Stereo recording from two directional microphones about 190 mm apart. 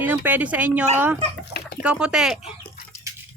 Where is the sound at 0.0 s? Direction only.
10° right (ahead or behind).